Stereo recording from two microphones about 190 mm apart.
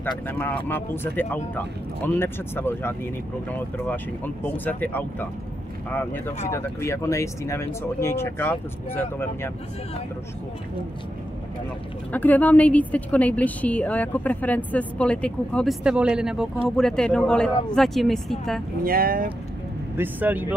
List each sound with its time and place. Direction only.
0.3 s a woman's voice: 10° left (ahead or behind)
12.1 s a woman's voice: 10° left (ahead or behind)
18.9 s speech: 50° right (ahead or behind)
20.0 s speech: 10° right (ahead or behind)